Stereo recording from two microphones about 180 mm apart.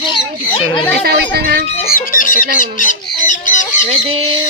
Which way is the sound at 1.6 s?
35° left (ahead or behind).